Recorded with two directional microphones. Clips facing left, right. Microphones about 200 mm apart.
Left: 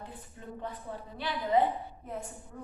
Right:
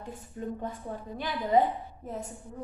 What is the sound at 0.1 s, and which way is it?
Speech, 45° right (ahead or behind).